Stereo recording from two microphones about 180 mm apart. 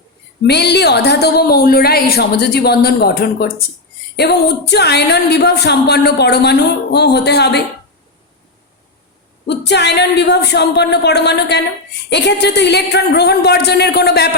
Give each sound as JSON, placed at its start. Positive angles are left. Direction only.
{"t": 0.4, "sound": "speech", "side_deg": 65}
{"t": 4.7, "sound": "a woman's voice", "side_deg": 65}
{"t": 9.5, "sound": "a woman's voice", "side_deg": 70}